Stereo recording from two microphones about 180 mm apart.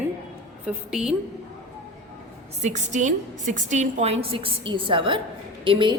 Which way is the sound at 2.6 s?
40° right (ahead or behind).